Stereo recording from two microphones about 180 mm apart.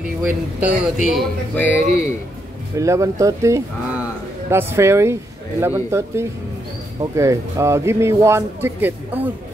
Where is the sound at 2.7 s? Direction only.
15° right (ahead or behind).